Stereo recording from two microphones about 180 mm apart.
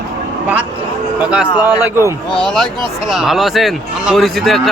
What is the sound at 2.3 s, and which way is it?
Speech, 5° left (ahead or behind).